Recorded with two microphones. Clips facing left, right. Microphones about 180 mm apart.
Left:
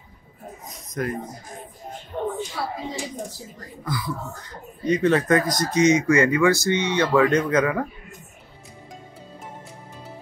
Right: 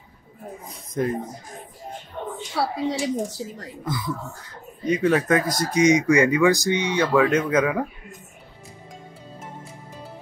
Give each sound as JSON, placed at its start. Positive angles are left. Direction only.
{"t": 0.7, "sound": "speech", "side_deg": -25}
{"t": 2.5, "sound": "a woman's voice", "side_deg": -75}
{"t": 3.8, "sound": "speech", "side_deg": -25}
{"t": 4.8, "sound": "speech", "side_deg": -10}